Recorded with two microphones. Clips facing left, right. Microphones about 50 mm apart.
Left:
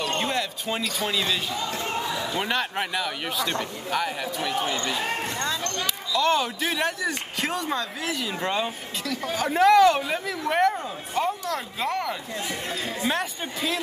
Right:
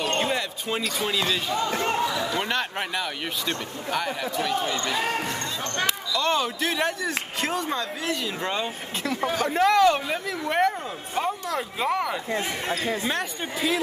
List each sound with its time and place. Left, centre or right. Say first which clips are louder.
0.2 s basketball bounce: right 1 dB; centre
0.9 s speech: right 1 dB; centre
1.5 s speech: right 4 dB; right
2.3 s speech: even; centre
6.1 s speech: left 3 dB; centre
9.0 s speech: right 4 dB; right
9.3 s speech: left 3 dB; centre
12.3 s speech: right 4 dB; right
13.1 s speech: even; centre